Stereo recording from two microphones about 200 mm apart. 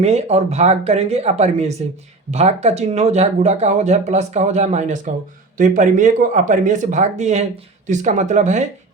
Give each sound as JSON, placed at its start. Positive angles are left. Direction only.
{"t": 0.0, "sound": "speech", "side_deg": -35}